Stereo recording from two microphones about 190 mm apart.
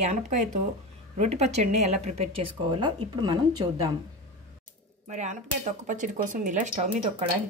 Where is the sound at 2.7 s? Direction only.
25° right (ahead or behind).